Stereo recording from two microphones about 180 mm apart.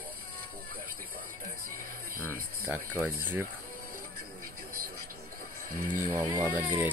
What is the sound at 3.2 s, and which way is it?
Speech, 10° right (ahead or behind).